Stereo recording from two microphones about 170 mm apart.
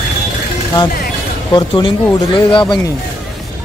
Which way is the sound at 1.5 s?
25° left (ahead or behind).